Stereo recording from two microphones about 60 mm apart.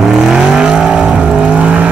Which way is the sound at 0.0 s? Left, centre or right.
Centre.